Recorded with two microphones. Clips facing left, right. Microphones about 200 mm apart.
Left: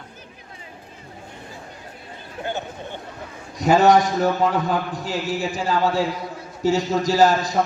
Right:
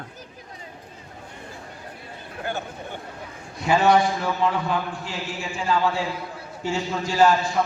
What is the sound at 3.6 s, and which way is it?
A man's voice, 40° left (ahead or behind).